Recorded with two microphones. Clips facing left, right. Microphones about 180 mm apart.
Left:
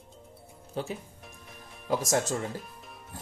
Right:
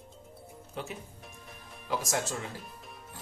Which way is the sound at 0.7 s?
35° left (ahead or behind).